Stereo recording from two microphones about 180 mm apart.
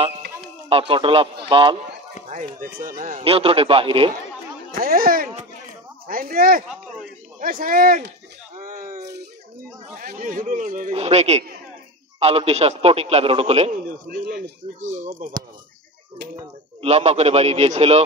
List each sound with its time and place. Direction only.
0.7 s speech: 30° right (ahead or behind)
2.6 s speech: 50° right (ahead or behind); by 4.1 s 30° right (ahead or behind)
4.7 s speech: 55° right (ahead or behind)
8.5 s a sound: 45° right (ahead or behind)
9.9 s speech: 50° right (ahead or behind)
10.9 s speech: 35° right (ahead or behind)
13.7 s a man's voice: 55° right (ahead or behind)
14.8 s speech: 40° right (ahead or behind)
16.8 s speech: 35° right (ahead or behind)